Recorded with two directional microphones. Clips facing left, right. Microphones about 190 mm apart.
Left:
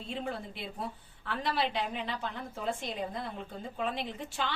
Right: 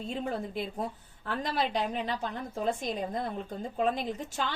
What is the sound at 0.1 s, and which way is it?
A woman's voice, 45° right (ahead or behind).